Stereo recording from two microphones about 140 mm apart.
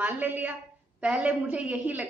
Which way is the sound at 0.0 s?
10° right (ahead or behind).